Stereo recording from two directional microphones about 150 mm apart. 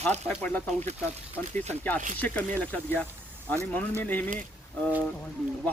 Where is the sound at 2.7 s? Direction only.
10° left (ahead or behind).